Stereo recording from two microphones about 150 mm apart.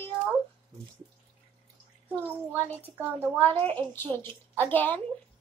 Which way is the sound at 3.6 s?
15° left (ahead or behind).